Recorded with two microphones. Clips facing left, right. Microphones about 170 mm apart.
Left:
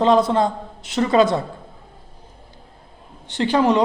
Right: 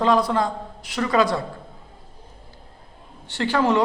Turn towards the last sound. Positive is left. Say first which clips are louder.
# left 3 dB
turn(degrees=20)  # may be behind; listen again after turning